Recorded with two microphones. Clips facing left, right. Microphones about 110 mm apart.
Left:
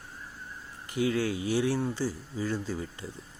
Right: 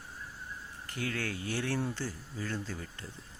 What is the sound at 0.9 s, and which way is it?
Speech, 15° left (ahead or behind).